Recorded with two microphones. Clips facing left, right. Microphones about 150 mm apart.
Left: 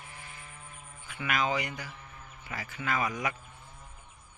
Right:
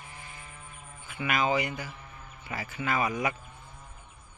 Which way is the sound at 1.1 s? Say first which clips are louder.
Right 3 dB; 5° right (ahead or behind).